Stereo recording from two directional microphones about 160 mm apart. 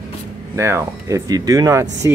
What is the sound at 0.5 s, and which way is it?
Speech, 15° right (ahead or behind).